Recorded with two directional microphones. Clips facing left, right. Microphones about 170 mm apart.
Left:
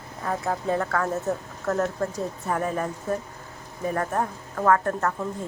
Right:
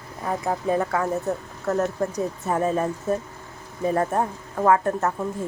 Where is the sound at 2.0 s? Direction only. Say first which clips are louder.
Right 3 dB; 20° right (ahead or behind).